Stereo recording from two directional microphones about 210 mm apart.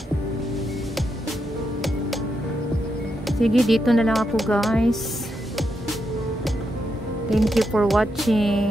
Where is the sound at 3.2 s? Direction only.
Centre (ahead or behind).